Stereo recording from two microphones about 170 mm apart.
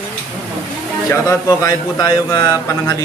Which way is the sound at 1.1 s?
20° left (ahead or behind).